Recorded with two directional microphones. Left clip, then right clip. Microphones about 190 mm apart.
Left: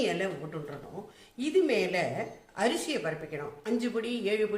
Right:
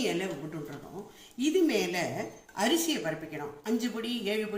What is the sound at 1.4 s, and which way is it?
A woman's voice, 40° left (ahead or behind).